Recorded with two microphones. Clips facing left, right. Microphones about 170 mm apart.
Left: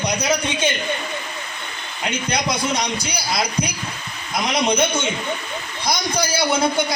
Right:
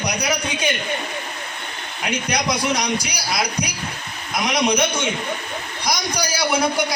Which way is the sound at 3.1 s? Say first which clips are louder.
Left 1 dB; 25° left (ahead or behind).